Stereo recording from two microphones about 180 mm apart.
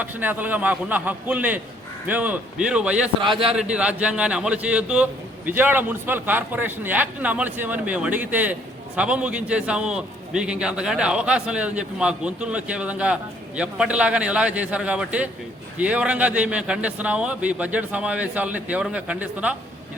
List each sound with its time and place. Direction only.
0.0 s a man's voice: 10° right (ahead or behind)
3.2 s a man's voice: 25° right (ahead or behind)
3.4 s a man's voice: 5° right (ahead or behind)